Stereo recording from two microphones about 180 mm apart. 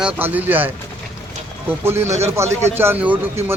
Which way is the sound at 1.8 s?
15° right (ahead or behind).